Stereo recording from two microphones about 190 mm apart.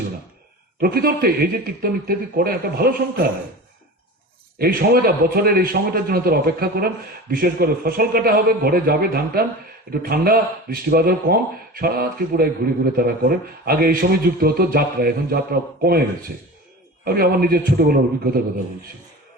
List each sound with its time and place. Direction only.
0.8 s speech: 55° right (ahead or behind)
4.5 s speech: 50° right (ahead or behind)
17.0 s speech: 50° right (ahead or behind)